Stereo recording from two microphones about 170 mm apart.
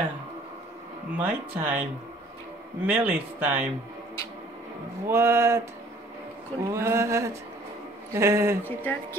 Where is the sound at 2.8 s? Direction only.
10° right (ahead or behind).